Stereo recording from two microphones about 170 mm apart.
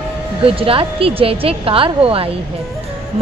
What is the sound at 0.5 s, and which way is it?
A woman's voice, 35° right (ahead or behind).